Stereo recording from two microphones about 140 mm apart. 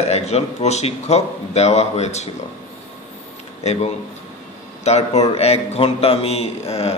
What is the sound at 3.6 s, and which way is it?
A man's voice, 45° left (ahead or behind).